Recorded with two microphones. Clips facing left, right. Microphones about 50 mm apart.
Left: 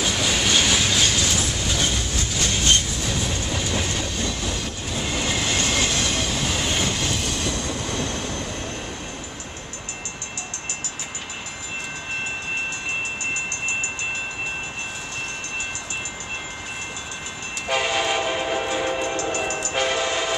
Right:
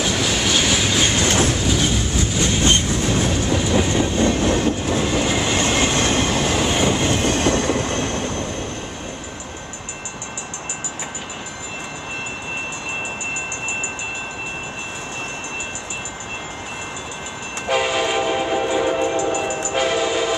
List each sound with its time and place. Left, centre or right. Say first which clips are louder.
0.0 s train: right 2 dB; centre
1.0 s train: right 3 dB; right
1.3 s train: right 7 dB; right
1.7 s train: right 5 dB; centre
2.6 s train: right 3 dB; right
3.5 s train: right 8 dB; centre
4.0 s train: right 9 dB; right
5.0 s train: right 2 dB; centre
5.6 s train: right 5 dB; right
6.6 s train: right 6 dB; centre; by 8.5 s right
17.6 s train: right 3 dB; centre
19.7 s train: right 4 dB; centre